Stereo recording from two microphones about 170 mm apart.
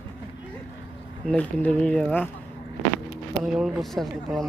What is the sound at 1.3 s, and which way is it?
Speech, 5° left (ahead or behind).